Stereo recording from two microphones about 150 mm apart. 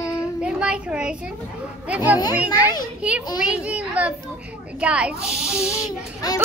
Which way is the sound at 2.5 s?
25° left (ahead or behind).